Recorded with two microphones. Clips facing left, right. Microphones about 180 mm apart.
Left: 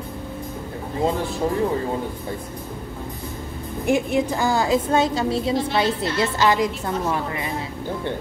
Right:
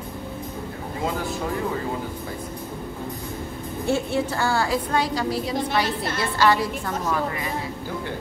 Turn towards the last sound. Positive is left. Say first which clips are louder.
# left 1 dB
turn(degrees=20)  # may be behind; listen again after turning